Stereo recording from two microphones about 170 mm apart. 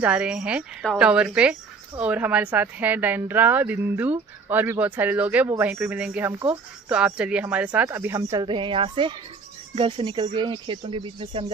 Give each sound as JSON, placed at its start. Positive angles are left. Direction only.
{"t": 0.0, "sound": "a woman's voice", "side_deg": -5}